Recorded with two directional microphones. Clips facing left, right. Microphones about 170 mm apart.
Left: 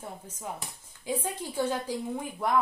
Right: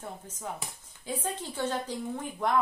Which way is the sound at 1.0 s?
10° left (ahead or behind).